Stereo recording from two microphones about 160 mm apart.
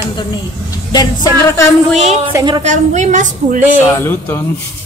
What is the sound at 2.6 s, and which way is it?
Speech, 50° right (ahead or behind).